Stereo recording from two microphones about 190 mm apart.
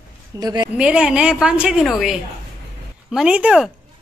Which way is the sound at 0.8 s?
5° right (ahead or behind).